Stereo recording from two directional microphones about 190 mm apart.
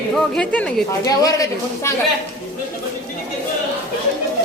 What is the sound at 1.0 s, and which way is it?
Speech, 20° left (ahead or behind).